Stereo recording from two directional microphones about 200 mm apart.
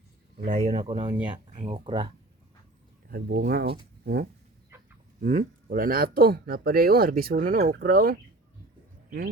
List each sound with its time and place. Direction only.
0.4 s speech: 35° right (ahead or behind)
3.1 s speech: 50° right (ahead or behind)
4.0 s a sound: 50° right (ahead or behind)
4.7 s livestock: 10° right (ahead or behind)
5.2 s speech: 40° right (ahead or behind)